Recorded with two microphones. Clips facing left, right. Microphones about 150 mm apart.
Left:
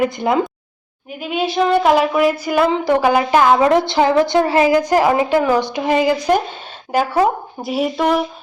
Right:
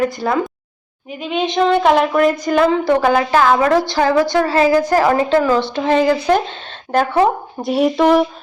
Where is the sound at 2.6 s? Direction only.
15° left (ahead or behind).